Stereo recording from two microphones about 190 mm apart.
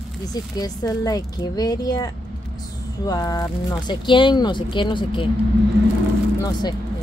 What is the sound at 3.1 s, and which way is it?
Speech, 20° left (ahead or behind).